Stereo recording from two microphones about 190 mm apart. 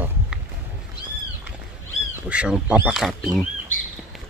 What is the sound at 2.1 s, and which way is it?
Speech, 5° right (ahead or behind).